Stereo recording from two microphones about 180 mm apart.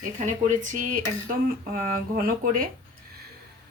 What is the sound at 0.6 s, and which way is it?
Speech, 45° right (ahead or behind).